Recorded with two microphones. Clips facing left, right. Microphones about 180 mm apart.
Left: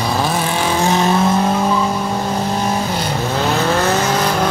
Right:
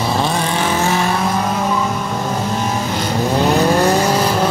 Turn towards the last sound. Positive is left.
turn(degrees=-10)  # may be behind; listen again after turning